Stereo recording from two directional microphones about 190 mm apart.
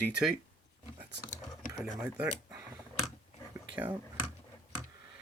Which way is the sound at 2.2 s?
20° right (ahead or behind).